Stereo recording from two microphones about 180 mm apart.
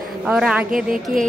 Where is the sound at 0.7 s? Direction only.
50° right (ahead or behind).